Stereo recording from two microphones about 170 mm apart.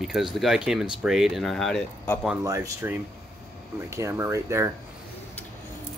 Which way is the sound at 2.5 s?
15° right (ahead or behind).